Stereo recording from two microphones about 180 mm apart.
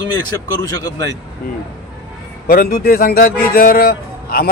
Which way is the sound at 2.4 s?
55° left (ahead or behind).